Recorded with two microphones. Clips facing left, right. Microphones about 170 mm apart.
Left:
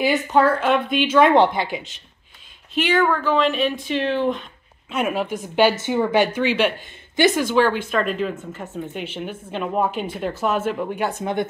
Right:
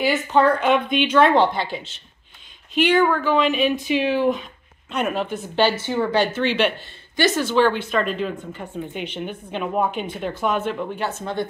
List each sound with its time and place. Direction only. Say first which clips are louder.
0.1 s a woman's voice: even; 10° left (ahead or behind)
1.3 s speech: left 2 dB; 20° left (ahead or behind)
2.7 s a woman's voice: right 2 dB; centre (ahead or behind)
4.9 s a woman's voice: left 1 dB; 5° left (ahead or behind)